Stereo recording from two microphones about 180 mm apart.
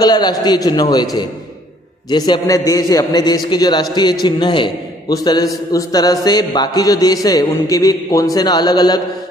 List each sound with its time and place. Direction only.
0.0 s a man's voice: 20° left (ahead or behind)